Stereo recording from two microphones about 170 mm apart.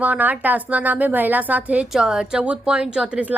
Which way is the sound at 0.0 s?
10° right (ahead or behind).